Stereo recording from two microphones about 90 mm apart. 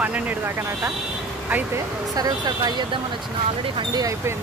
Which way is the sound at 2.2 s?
45° right (ahead or behind).